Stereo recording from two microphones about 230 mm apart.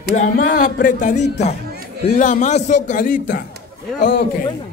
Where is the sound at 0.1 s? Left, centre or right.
Left.